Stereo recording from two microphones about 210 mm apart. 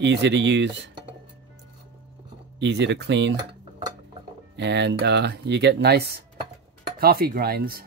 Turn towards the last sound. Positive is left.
turn(degrees=-45)  # may be behind; listen again after turning